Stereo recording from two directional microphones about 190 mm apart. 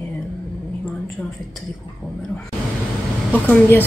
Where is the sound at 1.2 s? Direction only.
5° left (ahead or behind).